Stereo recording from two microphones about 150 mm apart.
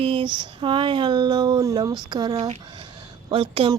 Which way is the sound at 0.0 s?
35° right (ahead or behind).